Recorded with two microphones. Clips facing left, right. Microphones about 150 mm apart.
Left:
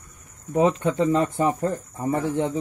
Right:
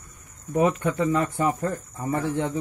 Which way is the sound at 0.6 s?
25° left (ahead or behind).